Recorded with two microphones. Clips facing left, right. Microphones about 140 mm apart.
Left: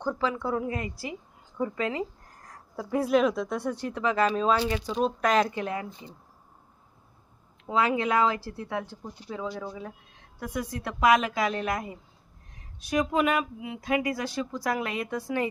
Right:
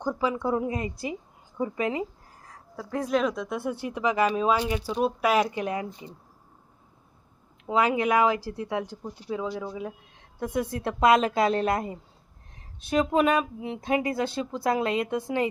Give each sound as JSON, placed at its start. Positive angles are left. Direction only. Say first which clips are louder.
{"t": 0.0, "sound": "speech", "louder": "right 2 dB", "side_deg": -10}
{"t": 1.5, "sound": "a sound", "louder": "right 1 dB", "side_deg": -15}
{"t": 2.7, "sound": "speech", "louder": "left 3 dB", "side_deg": 5}
{"t": 5.5, "sound": "speech", "louder": "right 2 dB", "side_deg": -20}
{"t": 7.7, "sound": "speech", "louder": "right 2 dB", "side_deg": -20}
{"t": 10.4, "sound": "speech", "louder": "right 5 dB", "side_deg": -25}